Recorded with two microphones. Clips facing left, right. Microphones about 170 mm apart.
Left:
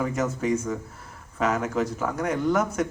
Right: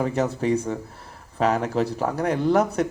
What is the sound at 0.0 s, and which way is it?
A man's voice, 35° right (ahead or behind).